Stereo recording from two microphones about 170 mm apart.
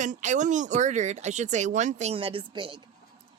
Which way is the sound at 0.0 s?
45° right (ahead or behind).